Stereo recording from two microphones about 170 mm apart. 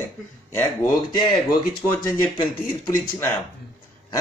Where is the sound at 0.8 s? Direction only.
25° left (ahead or behind).